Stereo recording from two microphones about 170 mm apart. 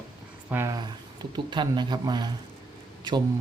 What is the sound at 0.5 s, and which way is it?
Speech, 15° right (ahead or behind).